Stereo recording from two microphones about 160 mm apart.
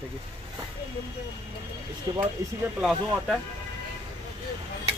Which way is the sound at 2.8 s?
Centre (ahead or behind).